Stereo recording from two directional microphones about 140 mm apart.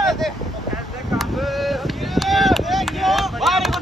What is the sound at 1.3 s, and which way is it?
Chop, centre (ahead or behind).